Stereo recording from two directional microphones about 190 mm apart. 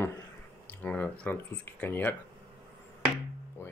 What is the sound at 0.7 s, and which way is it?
Speech, 10° left (ahead or behind).